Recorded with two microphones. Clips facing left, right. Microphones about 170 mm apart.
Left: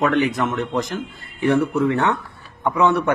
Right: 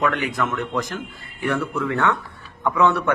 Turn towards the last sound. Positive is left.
turn(degrees=20)  # may be behind; listen again after turning